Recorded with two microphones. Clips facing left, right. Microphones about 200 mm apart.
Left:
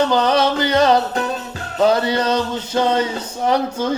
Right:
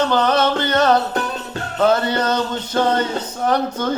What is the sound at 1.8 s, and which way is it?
Speech, 10° left (ahead or behind).